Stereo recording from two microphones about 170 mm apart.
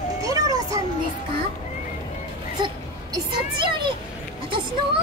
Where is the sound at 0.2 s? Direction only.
20° right (ahead or behind).